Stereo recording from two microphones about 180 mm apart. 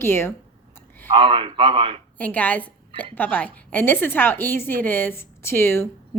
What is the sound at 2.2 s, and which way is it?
A woman's voice, 10° left (ahead or behind).